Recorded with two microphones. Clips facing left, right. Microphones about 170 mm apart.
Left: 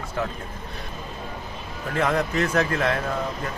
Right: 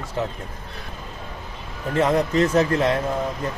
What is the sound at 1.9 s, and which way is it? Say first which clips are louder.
A man's voice: right 4 dB; 20° right (ahead or behind).